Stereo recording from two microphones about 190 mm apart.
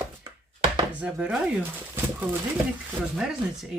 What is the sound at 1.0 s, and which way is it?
Speech, 5° right (ahead or behind).